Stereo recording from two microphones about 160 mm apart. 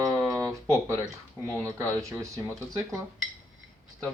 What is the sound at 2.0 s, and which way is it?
Speech, 20° right (ahead or behind).